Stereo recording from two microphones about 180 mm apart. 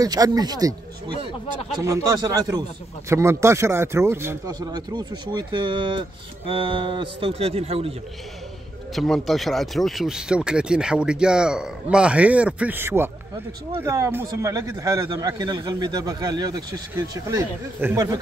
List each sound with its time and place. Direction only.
0.0 s speech: 20° right (ahead or behind)
8.9 s speech: centre (ahead or behind)